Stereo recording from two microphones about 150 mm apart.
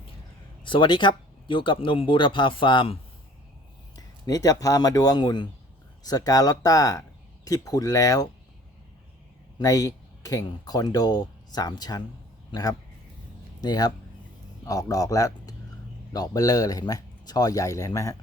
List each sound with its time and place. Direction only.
0.6 s speech: 30° left (ahead or behind)
3.9 s speech: 25° left (ahead or behind)
9.6 s speech: 25° left (ahead or behind)